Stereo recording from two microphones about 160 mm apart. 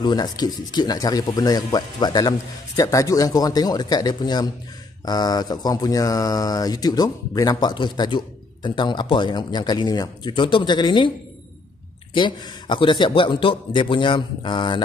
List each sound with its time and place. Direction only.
0.0 s speech: 25° left (ahead or behind)
12.1 s a man's voice: 30° left (ahead or behind)